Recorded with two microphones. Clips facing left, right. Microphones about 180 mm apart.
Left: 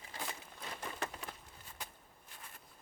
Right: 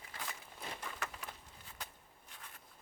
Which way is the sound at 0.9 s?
30° left (ahead or behind).